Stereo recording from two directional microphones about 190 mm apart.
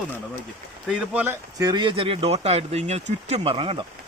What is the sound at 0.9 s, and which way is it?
Speech, 5° right (ahead or behind).